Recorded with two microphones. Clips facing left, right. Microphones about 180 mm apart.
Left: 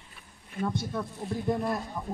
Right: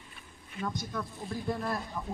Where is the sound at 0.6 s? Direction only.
30° left (ahead or behind).